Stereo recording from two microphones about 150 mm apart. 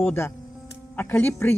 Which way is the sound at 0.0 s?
15° left (ahead or behind).